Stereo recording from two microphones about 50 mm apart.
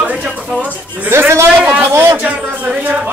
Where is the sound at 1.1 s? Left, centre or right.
Right.